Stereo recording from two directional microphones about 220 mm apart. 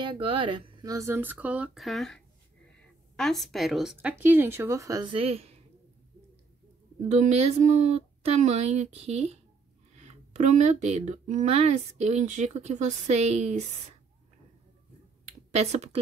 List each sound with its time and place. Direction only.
0.0 s a woman's voice: 25° right (ahead or behind)
7.1 s speech: 30° right (ahead or behind)
15.2 s finger snapping: 30° right (ahead or behind)